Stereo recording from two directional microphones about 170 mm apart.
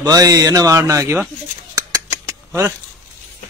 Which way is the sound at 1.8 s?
20° right (ahead or behind).